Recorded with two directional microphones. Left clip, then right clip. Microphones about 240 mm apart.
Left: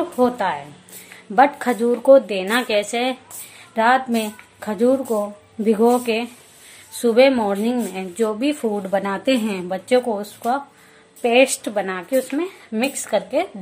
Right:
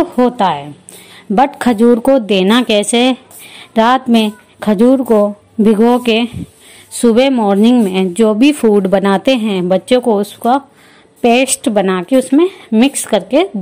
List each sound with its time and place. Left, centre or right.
0.2 s a woman's voice: right